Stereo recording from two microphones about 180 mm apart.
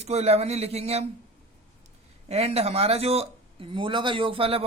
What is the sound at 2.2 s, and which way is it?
Speech, 35° right (ahead or behind).